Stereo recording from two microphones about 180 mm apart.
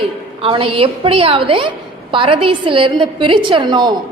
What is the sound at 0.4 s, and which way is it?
A woman's voice, 30° right (ahead or behind).